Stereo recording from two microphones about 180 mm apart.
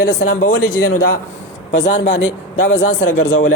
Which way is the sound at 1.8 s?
40° left (ahead or behind).